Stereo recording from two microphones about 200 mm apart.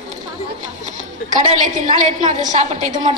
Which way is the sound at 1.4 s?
40° right (ahead or behind).